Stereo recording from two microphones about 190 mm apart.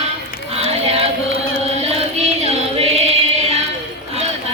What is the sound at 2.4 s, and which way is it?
Choir, 35° right (ahead or behind).